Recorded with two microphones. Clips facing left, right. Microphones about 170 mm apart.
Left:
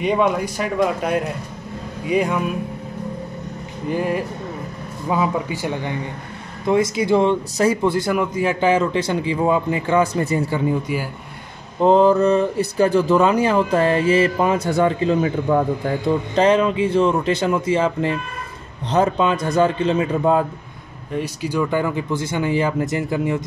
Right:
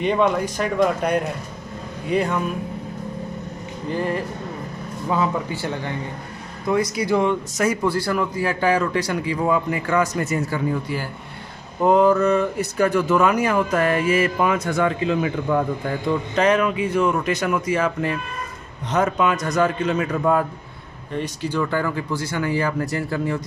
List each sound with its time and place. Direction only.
0.0 s speech: 5° left (ahead or behind)
3.9 s speech: 10° left (ahead or behind); by 10.4 s 30° left (ahead or behind)
10.5 s speech: 15° left (ahead or behind)
11.8 s speech: 30° left (ahead or behind)
21.1 s speech: 10° left (ahead or behind)